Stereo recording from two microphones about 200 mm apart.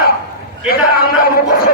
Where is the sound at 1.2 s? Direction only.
45° left (ahead or behind).